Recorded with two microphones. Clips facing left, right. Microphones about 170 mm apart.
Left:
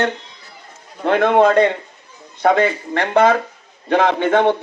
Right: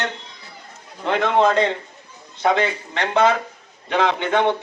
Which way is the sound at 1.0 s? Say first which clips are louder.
Left 5 dB; 55° left (ahead or behind).